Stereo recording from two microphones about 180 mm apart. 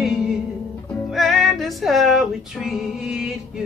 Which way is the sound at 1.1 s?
Centre (ahead or behind).